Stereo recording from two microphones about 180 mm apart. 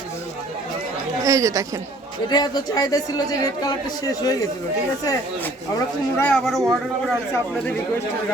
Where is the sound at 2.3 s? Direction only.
20° left (ahead or behind).